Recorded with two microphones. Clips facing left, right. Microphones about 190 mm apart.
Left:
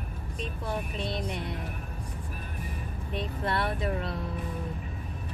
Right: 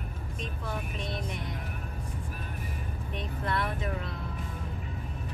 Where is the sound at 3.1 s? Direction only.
35° left (ahead or behind).